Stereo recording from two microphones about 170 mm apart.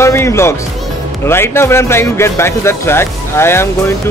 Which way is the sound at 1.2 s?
15° left (ahead or behind).